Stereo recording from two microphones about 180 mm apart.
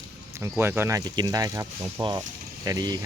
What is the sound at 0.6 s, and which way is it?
Speech, 15° right (ahead or behind).